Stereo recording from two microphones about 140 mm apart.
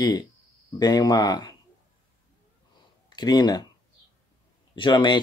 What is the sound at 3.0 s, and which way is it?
Speech, 30° left (ahead or behind).